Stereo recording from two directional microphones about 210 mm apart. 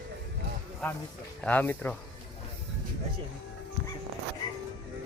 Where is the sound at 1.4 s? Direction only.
5° left (ahead or behind).